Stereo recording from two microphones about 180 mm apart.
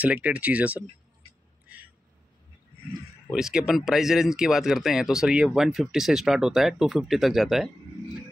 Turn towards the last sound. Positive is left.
turn(degrees=0)  # may be behind; listen again after turning